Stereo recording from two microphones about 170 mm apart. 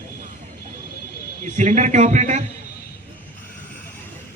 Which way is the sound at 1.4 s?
45° right (ahead or behind).